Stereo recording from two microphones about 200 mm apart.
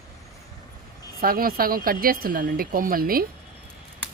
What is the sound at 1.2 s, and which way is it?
Speech, 45° right (ahead or behind).